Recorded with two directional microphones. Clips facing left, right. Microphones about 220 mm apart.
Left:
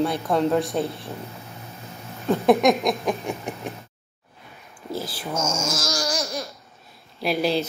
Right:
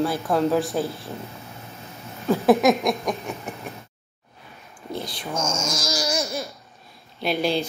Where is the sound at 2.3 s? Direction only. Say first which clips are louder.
Even; centre (ahead or behind).